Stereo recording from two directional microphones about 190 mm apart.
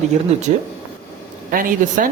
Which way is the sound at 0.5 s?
35° right (ahead or behind).